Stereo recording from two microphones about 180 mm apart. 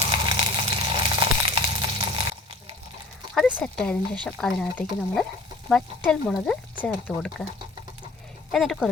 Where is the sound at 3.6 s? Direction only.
5° left (ahead or behind).